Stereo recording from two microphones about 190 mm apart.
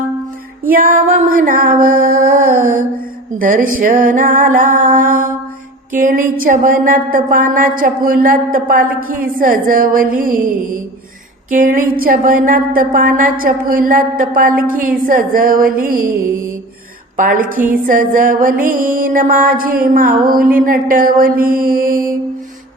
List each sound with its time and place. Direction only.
0.7 s a woman's voice: 45° right (ahead or behind)